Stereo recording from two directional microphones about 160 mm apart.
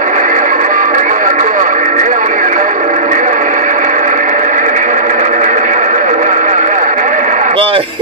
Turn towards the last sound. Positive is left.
turn(degrees=-35)  # may be behind; listen again after turning